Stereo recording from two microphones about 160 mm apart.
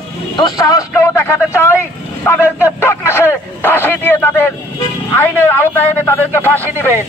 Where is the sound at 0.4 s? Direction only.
25° left (ahead or behind).